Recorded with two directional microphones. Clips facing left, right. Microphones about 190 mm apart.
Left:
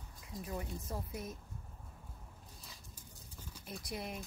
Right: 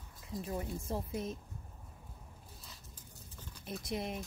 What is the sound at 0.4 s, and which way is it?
A woman's voice, 25° right (ahead or behind).